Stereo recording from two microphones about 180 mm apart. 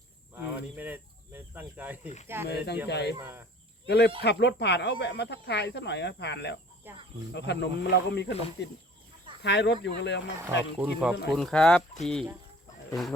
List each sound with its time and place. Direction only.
0.4 s speech: 10° right (ahead or behind)
2.8 s speech: 65° left (ahead or behind)
3.2 s speech: 15° right (ahead or behind)
3.8 s speech: 70° left (ahead or behind)
6.8 s speech: 10° right (ahead or behind)
7.3 s speech: 70° left (ahead or behind)
10.4 s speech: 10° right (ahead or behind)
11.3 s speech: 5° left (ahead or behind)